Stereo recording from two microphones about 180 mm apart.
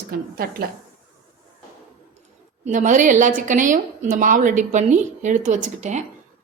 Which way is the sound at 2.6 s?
45° right (ahead or behind).